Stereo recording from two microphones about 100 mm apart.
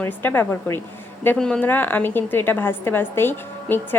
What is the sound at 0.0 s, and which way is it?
Speech, 20° left (ahead or behind).